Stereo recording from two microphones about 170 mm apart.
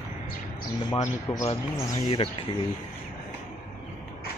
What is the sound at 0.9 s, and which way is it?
Speech, 20° left (ahead or behind).